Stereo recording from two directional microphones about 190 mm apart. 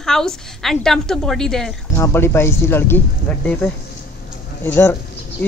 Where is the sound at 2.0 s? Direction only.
15° left (ahead or behind).